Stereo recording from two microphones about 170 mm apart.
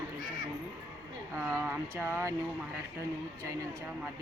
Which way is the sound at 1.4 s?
15° right (ahead or behind).